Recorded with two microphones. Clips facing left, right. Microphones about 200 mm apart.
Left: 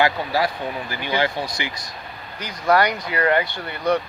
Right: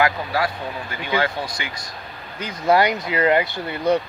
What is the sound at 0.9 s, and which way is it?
Speech, 30° left (ahead or behind).